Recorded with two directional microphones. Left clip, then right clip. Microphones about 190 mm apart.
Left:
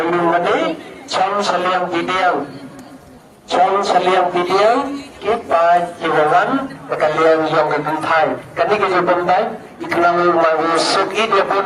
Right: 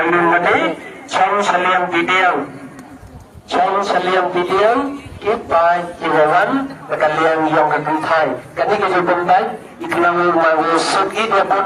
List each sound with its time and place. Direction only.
0.0 s a man's voice: 75° left (ahead or behind)
3.5 s speech: 60° left (ahead or behind)
7.0 s a man's voice: 80° left